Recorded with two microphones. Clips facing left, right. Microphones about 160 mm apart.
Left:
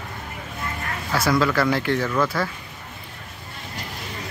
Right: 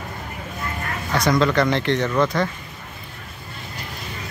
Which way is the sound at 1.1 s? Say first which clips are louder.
Right 2 dB; 5° left (ahead or behind).